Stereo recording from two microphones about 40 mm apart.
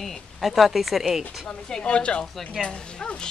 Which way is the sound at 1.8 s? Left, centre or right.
Left.